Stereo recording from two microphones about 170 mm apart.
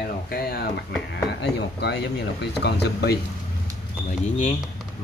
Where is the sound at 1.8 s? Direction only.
80° left.